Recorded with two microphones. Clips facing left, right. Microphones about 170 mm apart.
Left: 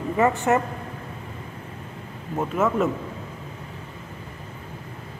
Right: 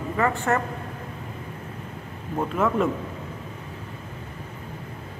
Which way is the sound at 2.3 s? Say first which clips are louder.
Left 1 dB; 5° left (ahead or behind).